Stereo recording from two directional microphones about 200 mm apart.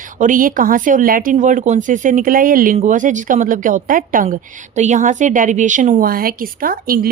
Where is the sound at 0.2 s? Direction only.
40° right (ahead or behind).